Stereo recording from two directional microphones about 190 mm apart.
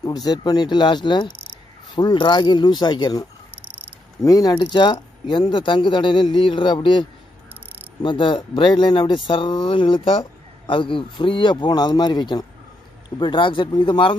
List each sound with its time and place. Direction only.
0.0 s speech: 20° left (ahead or behind)